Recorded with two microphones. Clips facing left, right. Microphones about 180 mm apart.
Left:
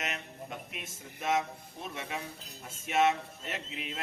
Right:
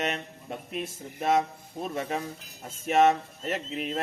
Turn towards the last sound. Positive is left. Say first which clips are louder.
# right 8 dB
turn(degrees=-45)  # may be behind; listen again after turning